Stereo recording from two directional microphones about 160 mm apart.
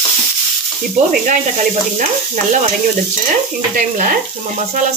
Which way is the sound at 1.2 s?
55° right (ahead or behind).